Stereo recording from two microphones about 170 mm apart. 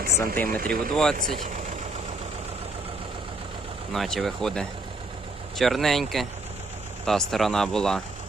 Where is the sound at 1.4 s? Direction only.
45° right (ahead or behind).